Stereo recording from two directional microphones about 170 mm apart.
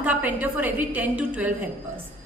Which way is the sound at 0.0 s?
10° right (ahead or behind).